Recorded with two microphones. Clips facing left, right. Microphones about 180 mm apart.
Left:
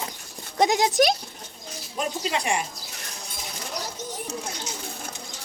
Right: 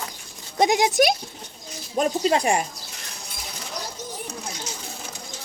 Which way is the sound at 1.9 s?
40° right (ahead or behind).